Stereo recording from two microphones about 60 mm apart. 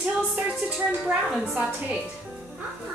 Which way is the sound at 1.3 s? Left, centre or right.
Centre.